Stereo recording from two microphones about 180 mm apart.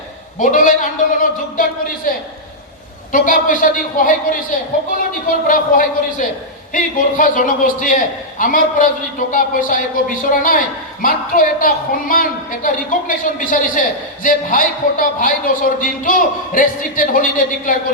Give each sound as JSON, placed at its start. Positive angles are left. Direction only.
{"t": 0.3, "sound": "a man's voice", "side_deg": 45}